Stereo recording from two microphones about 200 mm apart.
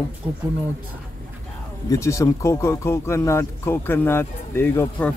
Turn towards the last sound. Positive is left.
turn(degrees=10)  # may be behind; listen again after turning